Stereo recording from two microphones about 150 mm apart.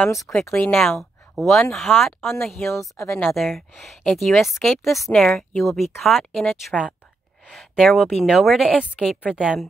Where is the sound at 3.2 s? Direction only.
Centre (ahead or behind).